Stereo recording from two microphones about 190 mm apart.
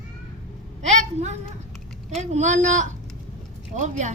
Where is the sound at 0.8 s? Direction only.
40° right (ahead or behind).